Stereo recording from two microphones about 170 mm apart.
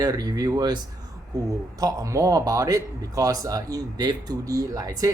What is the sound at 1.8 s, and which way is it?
Speech, 20° right (ahead or behind).